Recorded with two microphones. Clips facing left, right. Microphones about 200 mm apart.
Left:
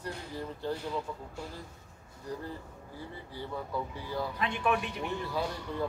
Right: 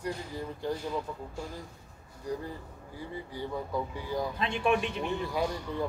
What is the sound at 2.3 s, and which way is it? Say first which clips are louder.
Speech: right 4 dB; 10° right (ahead or behind).